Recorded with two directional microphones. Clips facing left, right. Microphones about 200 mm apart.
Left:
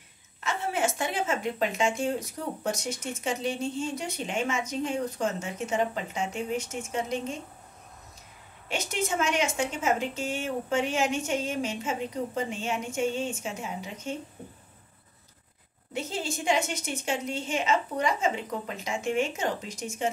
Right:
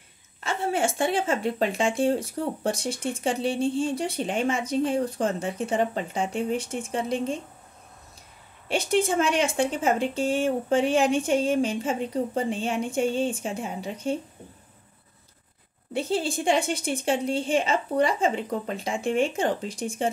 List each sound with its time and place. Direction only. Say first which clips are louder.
0.4 s speech: right 3 dB; 30° right (ahead or behind)
8.6 s speech: right 7 dB; 30° right (ahead or behind)
15.9 s speech: right 6 dB; 30° right (ahead or behind)